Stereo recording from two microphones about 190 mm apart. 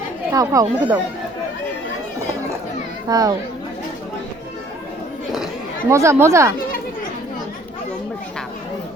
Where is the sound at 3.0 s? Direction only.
20° right (ahead or behind).